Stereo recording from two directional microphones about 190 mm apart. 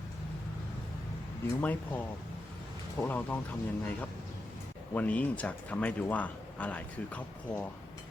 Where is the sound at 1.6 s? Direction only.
10° left (ahead or behind).